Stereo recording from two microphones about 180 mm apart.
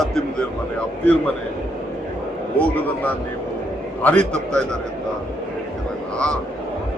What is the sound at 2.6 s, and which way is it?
A man's voice, 10° left (ahead or behind).